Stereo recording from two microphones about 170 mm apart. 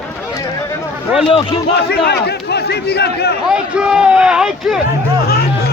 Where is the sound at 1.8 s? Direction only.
70° left (ahead or behind).